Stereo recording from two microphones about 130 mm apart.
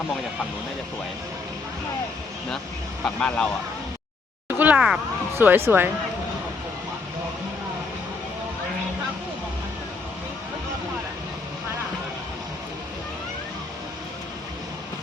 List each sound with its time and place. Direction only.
3.0 s speech: 5° left (ahead or behind)
4.4 s a sound: 10° right (ahead or behind)
5.4 s speech: 15° right (ahead or behind)